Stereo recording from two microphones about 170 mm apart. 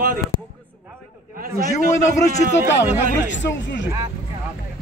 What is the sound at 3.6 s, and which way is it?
Speech, 90° left.